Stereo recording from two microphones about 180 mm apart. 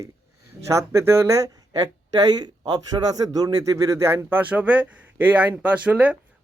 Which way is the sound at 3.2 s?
20° right (ahead or behind).